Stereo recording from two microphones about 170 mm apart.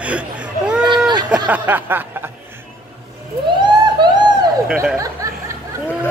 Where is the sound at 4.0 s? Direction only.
25° right (ahead or behind).